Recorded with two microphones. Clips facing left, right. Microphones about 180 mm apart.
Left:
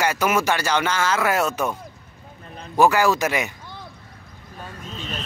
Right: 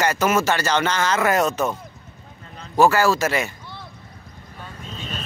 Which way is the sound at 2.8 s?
15° left (ahead or behind).